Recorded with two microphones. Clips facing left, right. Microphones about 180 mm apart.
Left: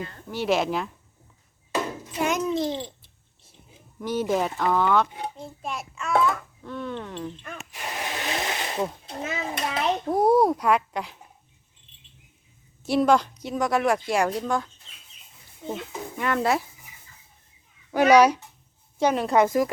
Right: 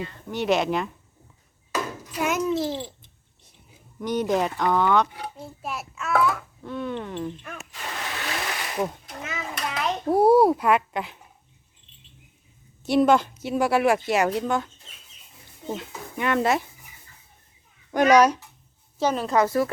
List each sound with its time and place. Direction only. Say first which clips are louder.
0.3 s a woman's voice: right 1 dB; centre (ahead or behind)
1.7 s a sound: left 1 dB; 25° left (ahead or behind)
2.2 s babbling: even; 5° right (ahead or behind)
4.0 s a woman's voice: right 1 dB; 5° left (ahead or behind)
7.7 s a sound: left 2 dB; 20° left (ahead or behind)
9.0 s children playing: left 4 dB; 30° left (ahead or behind)
10.1 s a woman's voice: right 3 dB; 5° right (ahead or behind)
12.8 s a woman's voice: right 1 dB; centre (ahead or behind)
16.1 s a woman's voice: right 1 dB; centre (ahead or behind)
17.9 s a child's voice: left 1 dB; 10° left (ahead or behind)